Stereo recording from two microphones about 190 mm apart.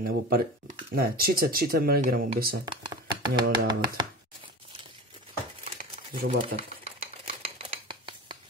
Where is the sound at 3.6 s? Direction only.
20° right (ahead or behind).